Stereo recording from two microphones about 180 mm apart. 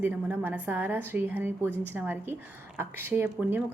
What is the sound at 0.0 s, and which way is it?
A woman's voice, 10° right (ahead or behind).